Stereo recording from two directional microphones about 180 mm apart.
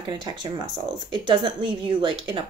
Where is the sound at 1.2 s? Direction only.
25° right (ahead or behind).